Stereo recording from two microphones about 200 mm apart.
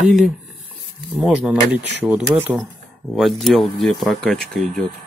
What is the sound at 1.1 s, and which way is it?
Speech, 5° right (ahead or behind).